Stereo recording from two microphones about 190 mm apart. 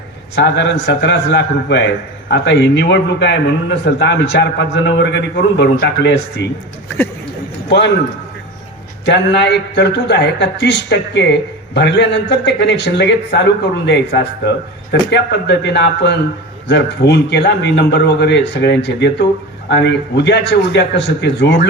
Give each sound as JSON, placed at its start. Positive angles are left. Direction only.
{"t": 0.3, "sound": "a man's voice", "side_deg": 70}
{"t": 7.7, "sound": "a man's voice", "side_deg": 65}
{"t": 9.0, "sound": "a man's voice", "side_deg": 65}